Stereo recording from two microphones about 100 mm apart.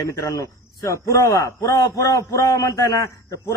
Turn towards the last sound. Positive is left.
turn(degrees=35)  # may be behind; listen again after turning